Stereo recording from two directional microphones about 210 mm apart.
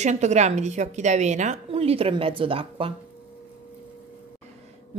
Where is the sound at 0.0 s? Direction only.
35° right (ahead or behind).